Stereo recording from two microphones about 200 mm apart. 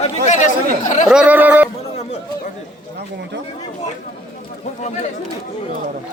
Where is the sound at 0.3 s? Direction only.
35° left (ahead or behind).